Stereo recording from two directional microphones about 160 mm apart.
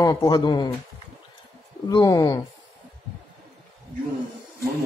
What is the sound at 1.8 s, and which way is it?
Speech, 25° left (ahead or behind).